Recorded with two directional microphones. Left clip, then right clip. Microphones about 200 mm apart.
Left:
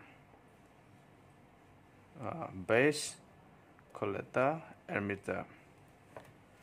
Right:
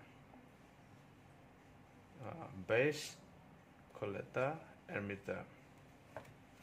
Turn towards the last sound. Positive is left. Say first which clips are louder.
# left 6 dB
turn(degrees=30)  # may be behind; listen again after turning